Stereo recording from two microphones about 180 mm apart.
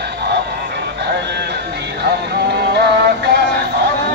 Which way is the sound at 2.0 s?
65° right (ahead or behind).